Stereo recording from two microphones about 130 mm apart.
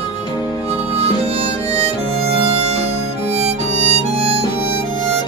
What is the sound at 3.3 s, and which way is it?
Harmonica, 55° right (ahead or behind).